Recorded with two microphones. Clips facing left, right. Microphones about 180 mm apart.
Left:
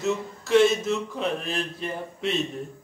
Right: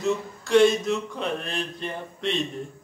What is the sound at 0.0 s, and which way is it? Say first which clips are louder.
Speech: right 1 dB; centre (ahead or behind).